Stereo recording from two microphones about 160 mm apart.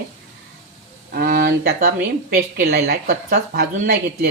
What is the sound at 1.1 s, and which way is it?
A woman's voice, 70° right (ahead or behind).